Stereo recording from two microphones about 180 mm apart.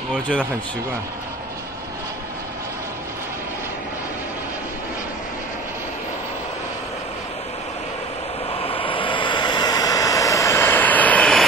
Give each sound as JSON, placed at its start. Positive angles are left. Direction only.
{"t": 8.5, "sound": "vehicle", "side_deg": 30}